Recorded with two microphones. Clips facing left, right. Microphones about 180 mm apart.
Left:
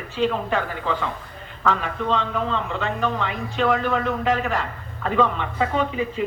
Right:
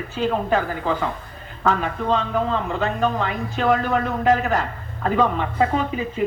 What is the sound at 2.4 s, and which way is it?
A man's voice, 40° right (ahead or behind).